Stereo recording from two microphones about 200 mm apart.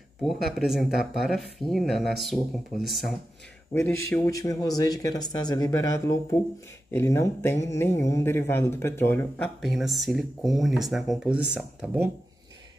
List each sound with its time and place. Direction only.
0.2 s speech: centre (ahead or behind)
3.7 s speech: 10° left (ahead or behind)
9.6 s speech: centre (ahead or behind)